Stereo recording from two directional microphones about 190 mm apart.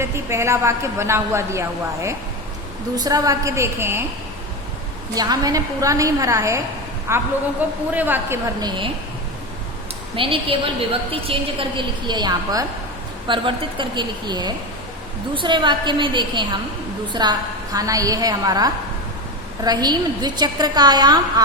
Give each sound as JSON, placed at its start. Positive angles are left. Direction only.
{"t": 0.0, "sound": "a woman's voice", "side_deg": -15}
{"t": 5.1, "sound": "a woman's voice", "side_deg": -20}
{"t": 8.6, "sound": "a woman's voice", "side_deg": -25}
{"t": 10.2, "sound": "a woman's voice", "side_deg": -30}